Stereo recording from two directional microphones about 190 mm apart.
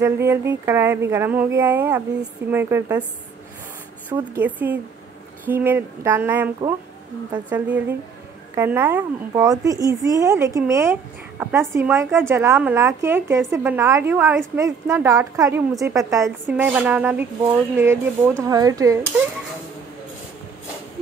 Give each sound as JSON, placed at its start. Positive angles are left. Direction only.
{"t": 0.0, "sound": "speech", "side_deg": -15}
{"t": 4.2, "sound": "speech", "side_deg": -10}